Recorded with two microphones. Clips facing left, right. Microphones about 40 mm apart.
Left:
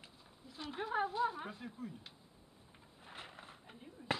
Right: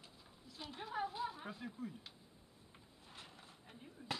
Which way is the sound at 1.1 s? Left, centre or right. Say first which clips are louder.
Left 7 dB; centre.